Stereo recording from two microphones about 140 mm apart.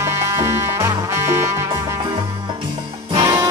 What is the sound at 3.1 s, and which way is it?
Music, 35° right (ahead or behind).